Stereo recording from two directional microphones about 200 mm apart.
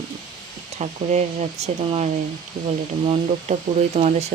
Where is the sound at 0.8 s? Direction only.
35° right (ahead or behind).